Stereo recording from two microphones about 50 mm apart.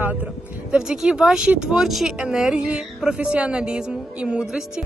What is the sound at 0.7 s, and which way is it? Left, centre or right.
A woman's voice, centre.